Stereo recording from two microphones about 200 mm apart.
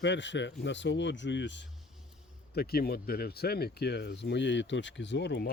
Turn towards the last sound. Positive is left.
turn(degrees=60)  # may be behind; listen again after turning